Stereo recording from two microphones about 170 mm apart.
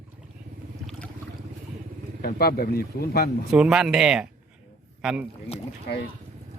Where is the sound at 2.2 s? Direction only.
60° left (ahead or behind).